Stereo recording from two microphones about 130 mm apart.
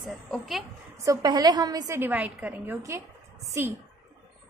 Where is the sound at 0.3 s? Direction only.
Centre (ahead or behind).